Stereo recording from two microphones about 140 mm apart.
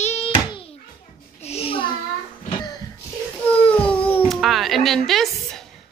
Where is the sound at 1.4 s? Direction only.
45° left (ahead or behind).